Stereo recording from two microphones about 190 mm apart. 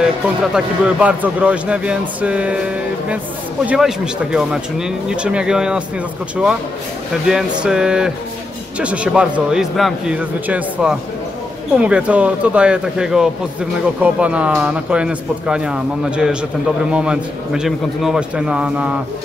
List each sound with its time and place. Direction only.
0.6 s a man's voice: 5° right (ahead or behind)
3.6 s a man's voice: 5° right (ahead or behind)
7.2 s a man's voice: 5° right (ahead or behind)